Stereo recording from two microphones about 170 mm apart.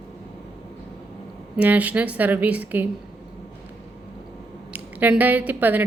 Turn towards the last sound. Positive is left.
turn(degrees=-10)  # may be behind; listen again after turning